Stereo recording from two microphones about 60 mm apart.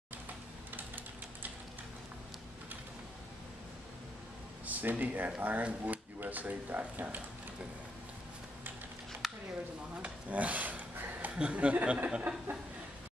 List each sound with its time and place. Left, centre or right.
0.7 s typing: right
4.6 s speech: right
9.2 s a sound: centre
10.0 s rub: right
11.3 s speech: centre